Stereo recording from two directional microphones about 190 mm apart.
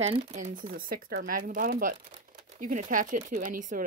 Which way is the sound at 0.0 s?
35° right (ahead or behind).